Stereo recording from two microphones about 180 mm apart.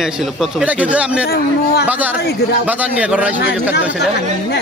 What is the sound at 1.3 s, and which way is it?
Speech, 60° left (ahead or behind).